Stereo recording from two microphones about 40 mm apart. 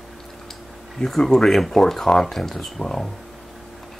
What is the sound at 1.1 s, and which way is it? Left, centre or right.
Speech, centre.